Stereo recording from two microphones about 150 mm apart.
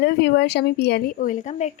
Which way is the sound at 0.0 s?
90° left.